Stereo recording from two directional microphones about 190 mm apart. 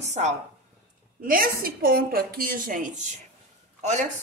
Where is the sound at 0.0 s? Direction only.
40° right (ahead or behind).